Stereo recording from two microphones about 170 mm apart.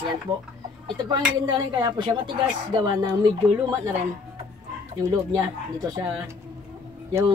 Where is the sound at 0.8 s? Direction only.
25° right (ahead or behind).